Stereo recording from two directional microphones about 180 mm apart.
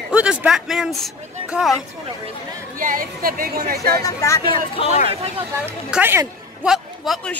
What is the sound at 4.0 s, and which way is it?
Speech, 20° left (ahead or behind).